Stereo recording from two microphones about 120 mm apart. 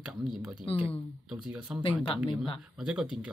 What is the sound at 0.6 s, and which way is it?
Speech, 50° left (ahead or behind).